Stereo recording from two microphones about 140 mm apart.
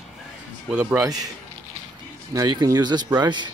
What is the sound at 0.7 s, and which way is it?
Speech, 5° right (ahead or behind).